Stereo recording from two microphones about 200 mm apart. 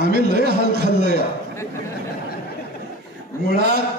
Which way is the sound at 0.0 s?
50° right (ahead or behind).